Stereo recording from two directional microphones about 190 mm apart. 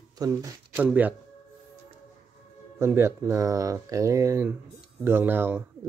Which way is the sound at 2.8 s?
15° right (ahead or behind).